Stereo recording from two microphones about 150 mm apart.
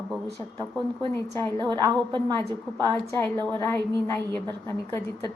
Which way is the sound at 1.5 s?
30° right (ahead or behind).